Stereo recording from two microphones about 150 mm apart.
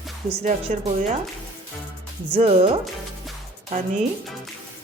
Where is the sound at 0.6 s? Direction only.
50° right (ahead or behind).